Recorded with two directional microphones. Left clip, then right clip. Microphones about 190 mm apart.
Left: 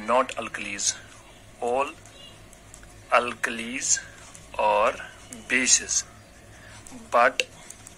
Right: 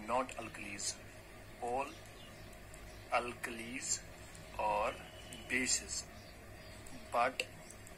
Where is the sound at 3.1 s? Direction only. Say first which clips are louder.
Left 14 dB; 50° left (ahead or behind).